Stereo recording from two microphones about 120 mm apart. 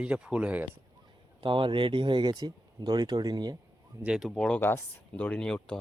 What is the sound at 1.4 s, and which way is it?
Speech, 45° right (ahead or behind).